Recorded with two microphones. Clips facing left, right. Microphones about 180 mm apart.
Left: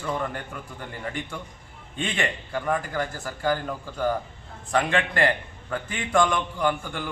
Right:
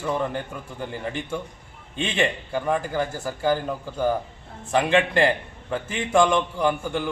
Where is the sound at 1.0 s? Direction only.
25° right (ahead or behind).